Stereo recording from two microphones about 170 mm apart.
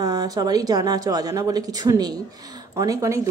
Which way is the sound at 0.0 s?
20° right (ahead or behind).